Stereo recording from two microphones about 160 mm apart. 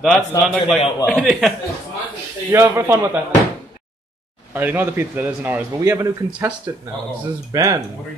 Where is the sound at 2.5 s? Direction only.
15° right (ahead or behind).